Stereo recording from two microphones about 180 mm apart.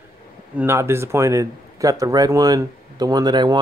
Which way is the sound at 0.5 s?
15° right (ahead or behind).